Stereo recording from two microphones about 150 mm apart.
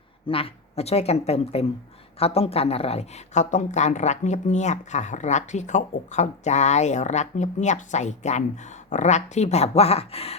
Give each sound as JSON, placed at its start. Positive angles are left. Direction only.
{"t": 0.3, "sound": "speech", "side_deg": 40}